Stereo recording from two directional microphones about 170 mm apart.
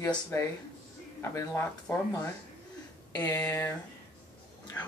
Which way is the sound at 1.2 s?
15° left (ahead or behind).